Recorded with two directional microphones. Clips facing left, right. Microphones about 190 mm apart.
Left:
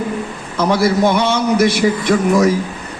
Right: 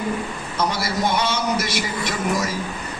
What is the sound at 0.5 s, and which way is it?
A man's voice, 55° left (ahead or behind).